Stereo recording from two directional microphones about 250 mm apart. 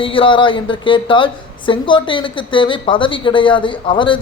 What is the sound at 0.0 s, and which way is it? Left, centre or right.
A woman's voice, left.